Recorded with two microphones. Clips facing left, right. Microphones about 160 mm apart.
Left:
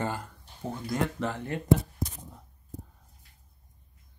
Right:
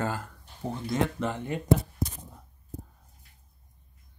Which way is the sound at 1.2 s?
15° right (ahead or behind).